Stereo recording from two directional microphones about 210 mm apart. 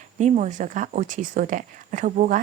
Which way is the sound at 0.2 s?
35° right (ahead or behind).